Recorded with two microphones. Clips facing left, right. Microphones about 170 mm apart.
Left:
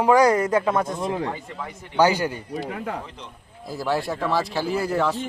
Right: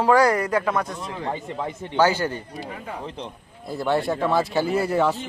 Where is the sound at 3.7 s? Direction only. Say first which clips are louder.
Right 2 dB; centre (ahead or behind).